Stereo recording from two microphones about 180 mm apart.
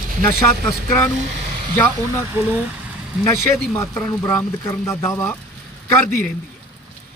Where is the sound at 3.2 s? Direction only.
15° left (ahead or behind).